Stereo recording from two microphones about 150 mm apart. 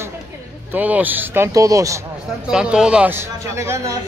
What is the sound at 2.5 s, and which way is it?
Speech, 5° right (ahead or behind).